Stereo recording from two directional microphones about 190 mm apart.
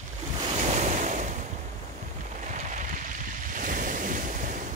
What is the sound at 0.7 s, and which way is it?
Waves, 40° right (ahead or behind).